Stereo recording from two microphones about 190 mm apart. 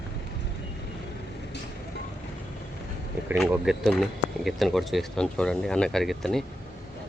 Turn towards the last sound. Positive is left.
turn(degrees=0)  # may be behind; listen again after turning